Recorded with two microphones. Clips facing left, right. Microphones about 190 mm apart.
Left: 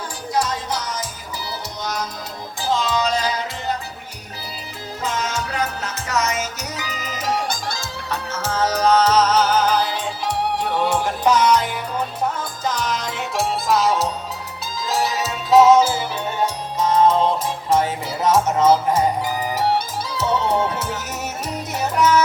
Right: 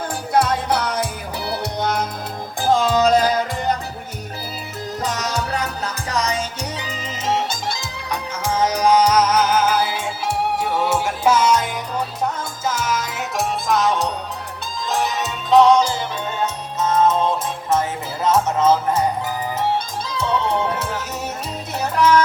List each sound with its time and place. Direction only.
0.3 s music: 60° right (ahead or behind)
5.0 s music: 40° right (ahead or behind); by 11.5 s 10° right (ahead or behind)
12.6 s music: 5° right (ahead or behind); by 17.2 s 15° left (ahead or behind)
18.4 s music: 10° left (ahead or behind)
21.9 s music: 5° left (ahead or behind)